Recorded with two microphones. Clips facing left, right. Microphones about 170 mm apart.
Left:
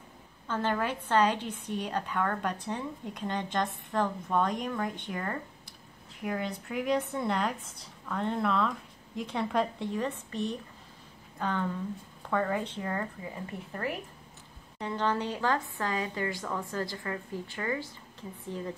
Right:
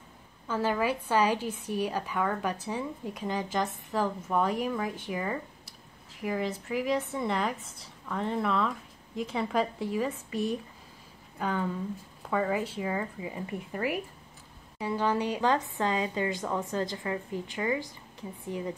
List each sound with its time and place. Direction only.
0.5 s a woman's voice: 5° right (ahead or behind)